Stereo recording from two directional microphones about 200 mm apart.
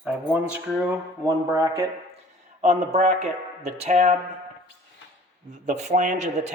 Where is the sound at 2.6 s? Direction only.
35° right (ahead or behind).